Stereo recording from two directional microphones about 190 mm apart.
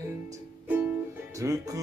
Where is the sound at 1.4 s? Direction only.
15° right (ahead or behind).